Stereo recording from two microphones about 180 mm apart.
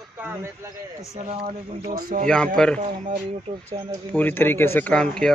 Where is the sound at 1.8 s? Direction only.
45° right (ahead or behind).